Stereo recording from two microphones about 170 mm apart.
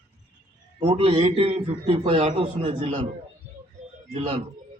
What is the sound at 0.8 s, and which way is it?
A man's voice, 35° right (ahead or behind).